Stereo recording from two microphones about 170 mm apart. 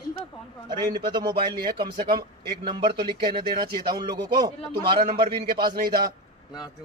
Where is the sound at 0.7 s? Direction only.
25° right (ahead or behind).